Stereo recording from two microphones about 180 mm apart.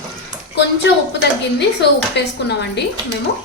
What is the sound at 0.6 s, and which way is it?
A woman's voice, 70° left (ahead or behind).